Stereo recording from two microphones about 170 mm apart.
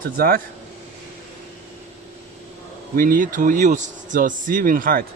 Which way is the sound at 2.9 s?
55° right (ahead or behind).